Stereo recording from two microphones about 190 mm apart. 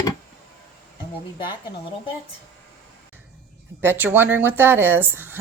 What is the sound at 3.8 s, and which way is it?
A woman's voice, 10° right (ahead or behind).